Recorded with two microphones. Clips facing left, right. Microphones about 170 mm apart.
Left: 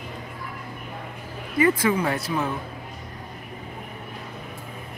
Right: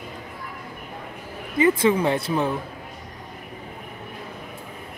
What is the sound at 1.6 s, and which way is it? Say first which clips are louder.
Speech: right 2 dB; 25° right (ahead or behind).